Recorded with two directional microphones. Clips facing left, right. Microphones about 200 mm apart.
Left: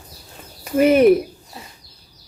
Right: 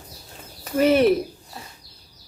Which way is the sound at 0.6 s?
10° left (ahead or behind).